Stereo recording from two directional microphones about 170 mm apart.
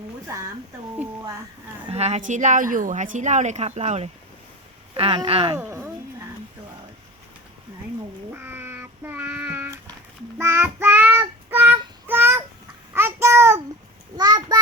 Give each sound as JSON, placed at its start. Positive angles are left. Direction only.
{"t": 1.9, "sound": "a woman's voice", "side_deg": -40}
{"t": 5.5, "sound": "speech", "side_deg": -15}
{"t": 8.3, "sound": "child singing", "side_deg": -10}
{"t": 12.0, "sound": "a sound", "side_deg": -10}
{"t": 12.9, "sound": "child singing", "side_deg": -15}
{"t": 14.2, "sound": "a sound", "side_deg": -25}